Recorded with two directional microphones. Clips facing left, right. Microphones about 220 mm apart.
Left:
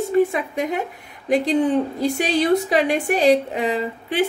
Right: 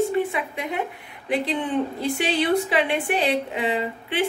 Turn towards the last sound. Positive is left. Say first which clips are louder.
# left 2 dB
turn(degrees=40)  # may be behind; listen again after turning